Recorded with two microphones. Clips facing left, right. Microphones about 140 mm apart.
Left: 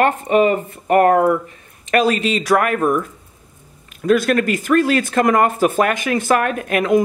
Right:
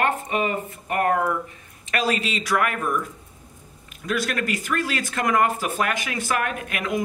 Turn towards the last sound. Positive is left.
turn(degrees=50)  # may be behind; listen again after turning